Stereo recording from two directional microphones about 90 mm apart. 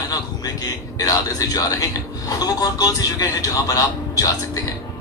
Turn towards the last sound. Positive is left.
turn(degrees=40)  # may be behind; listen again after turning